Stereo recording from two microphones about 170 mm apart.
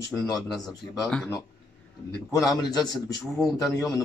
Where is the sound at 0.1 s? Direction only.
5° left (ahead or behind).